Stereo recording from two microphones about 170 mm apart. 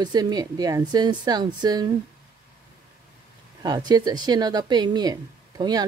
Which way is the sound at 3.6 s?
25° right (ahead or behind).